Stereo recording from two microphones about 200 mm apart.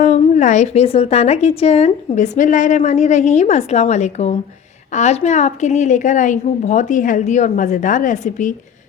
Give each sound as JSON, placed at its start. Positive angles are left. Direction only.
{"t": 0.0, "sound": "a woman's voice", "side_deg": 35}